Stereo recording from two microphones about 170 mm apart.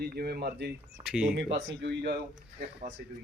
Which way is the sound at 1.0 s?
5° right (ahead or behind).